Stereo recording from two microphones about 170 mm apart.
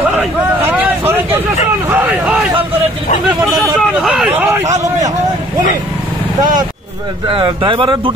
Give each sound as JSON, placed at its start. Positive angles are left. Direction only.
{"t": 0.0, "sound": "a sound", "side_deg": -10}
{"t": 3.5, "sound": "speech", "side_deg": -5}
{"t": 7.2, "sound": "speech", "side_deg": -30}